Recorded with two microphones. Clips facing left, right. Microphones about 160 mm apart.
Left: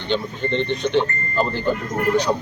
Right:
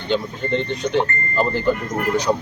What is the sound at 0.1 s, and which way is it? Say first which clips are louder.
Speech: right 1 dB; 5° right (ahead or behind).